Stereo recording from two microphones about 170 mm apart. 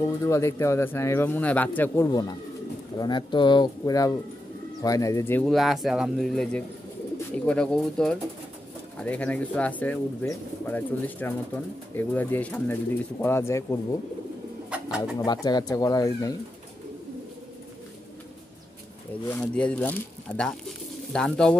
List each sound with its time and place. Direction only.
0.0 s speech: 15° left (ahead or behind)
5.5 s speech: centre (ahead or behind); by 13.7 s 15° left (ahead or behind)
14.7 s bird: 5° right (ahead or behind)
15.1 s speech: 25° left (ahead or behind)
19.5 s speech: 10° left (ahead or behind)